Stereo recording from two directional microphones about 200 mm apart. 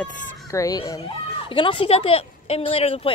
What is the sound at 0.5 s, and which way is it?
A woman's voice, 15° left (ahead or behind).